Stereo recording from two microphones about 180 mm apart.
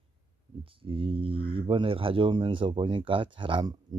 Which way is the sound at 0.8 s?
30° right (ahead or behind).